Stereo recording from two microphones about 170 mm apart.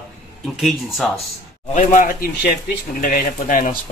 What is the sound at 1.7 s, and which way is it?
Speech, 50° left (ahead or behind).